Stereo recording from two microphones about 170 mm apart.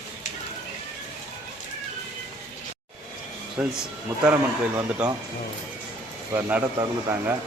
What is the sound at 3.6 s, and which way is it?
Speech, 5° right (ahead or behind).